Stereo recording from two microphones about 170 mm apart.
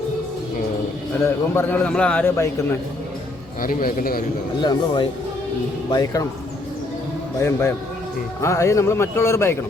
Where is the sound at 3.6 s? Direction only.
55° left (ahead or behind).